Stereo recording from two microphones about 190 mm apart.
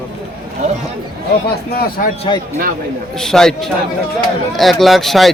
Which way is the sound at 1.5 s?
55° left (ahead or behind).